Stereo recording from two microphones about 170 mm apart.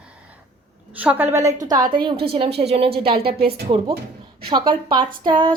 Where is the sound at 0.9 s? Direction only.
10° right (ahead or behind); by 3.2 s 35° right (ahead or behind).